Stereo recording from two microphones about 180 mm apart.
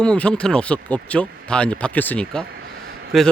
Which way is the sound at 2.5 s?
60° right (ahead or behind).